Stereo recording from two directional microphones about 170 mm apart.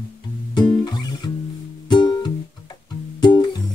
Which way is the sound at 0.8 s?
25° left (ahead or behind).